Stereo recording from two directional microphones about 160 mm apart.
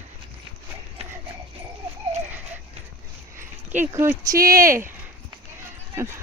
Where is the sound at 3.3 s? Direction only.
15° right (ahead or behind).